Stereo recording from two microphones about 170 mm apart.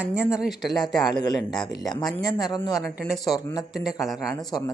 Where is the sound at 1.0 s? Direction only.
25° left (ahead or behind).